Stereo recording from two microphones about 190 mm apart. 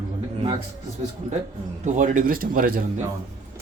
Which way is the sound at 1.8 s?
40° right (ahead or behind).